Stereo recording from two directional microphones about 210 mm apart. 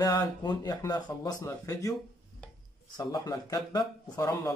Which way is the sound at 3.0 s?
15° left (ahead or behind).